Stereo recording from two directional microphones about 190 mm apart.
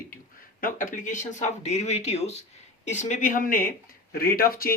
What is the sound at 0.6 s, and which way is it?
Speech, 45° left (ahead or behind).